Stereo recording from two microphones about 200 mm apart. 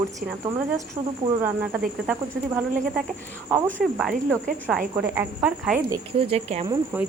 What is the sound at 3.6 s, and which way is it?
Speech, centre (ahead or behind).